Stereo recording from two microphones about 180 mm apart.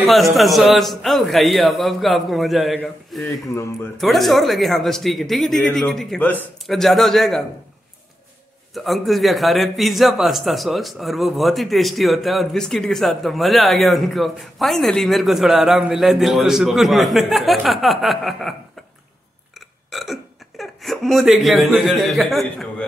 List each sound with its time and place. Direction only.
0.0 s a man's voice: centre (ahead or behind)
3.3 s a man's voice: 15° left (ahead or behind)
4.0 s a man's voice: centre (ahead or behind)
8.7 s a man's voice: centre (ahead or behind)
19.9 s speech: centre (ahead or behind)